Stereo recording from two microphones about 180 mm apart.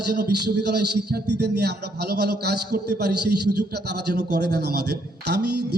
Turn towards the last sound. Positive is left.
turn(degrees=-65)  # may be behind; listen again after turning